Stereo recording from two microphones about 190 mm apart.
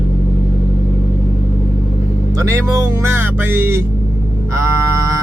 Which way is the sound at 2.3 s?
15° right (ahead or behind).